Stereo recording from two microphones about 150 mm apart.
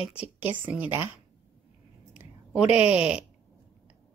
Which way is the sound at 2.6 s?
45° left (ahead or behind).